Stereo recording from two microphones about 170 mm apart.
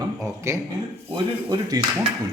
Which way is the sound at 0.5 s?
15° right (ahead or behind).